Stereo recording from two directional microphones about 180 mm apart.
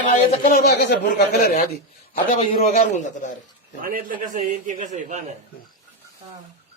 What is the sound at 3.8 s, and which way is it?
A man's voice, 50° right (ahead or behind).